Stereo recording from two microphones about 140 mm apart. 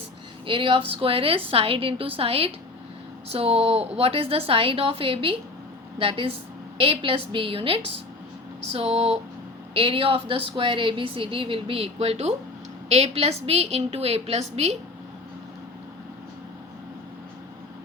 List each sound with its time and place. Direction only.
0.4 s a woman's voice: 40° right (ahead or behind)